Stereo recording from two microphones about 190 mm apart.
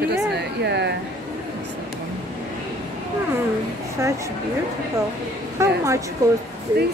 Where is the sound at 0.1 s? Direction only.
60° right (ahead or behind).